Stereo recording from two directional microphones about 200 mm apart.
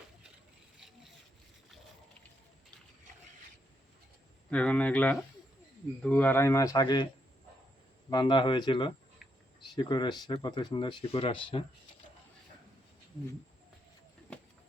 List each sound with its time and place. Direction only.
4.4 s speech: 5° left (ahead or behind); by 7.1 s 20° left (ahead or behind)
8.1 s speech: 25° left (ahead or behind)